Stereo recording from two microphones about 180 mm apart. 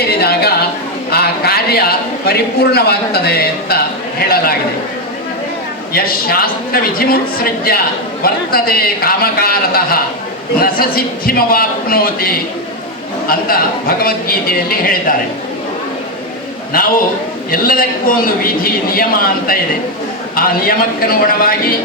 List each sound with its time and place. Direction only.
0.1 s a sound: 60° left (ahead or behind)
1.1 s a man's voice: 60° left (ahead or behind)
5.9 s a man's voice: 55° left (ahead or behind)
16.7 s a man's voice: 55° left (ahead or behind)